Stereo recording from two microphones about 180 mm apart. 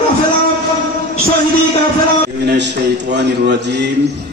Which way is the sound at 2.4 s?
75° right (ahead or behind).